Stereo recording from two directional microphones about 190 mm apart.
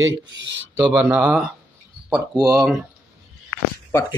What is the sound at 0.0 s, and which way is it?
Speech, 70° right (ahead or behind).